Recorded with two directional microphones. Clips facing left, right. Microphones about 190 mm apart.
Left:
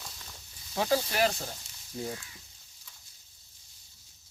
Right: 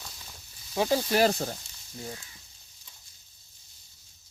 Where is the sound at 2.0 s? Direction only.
15° left (ahead or behind).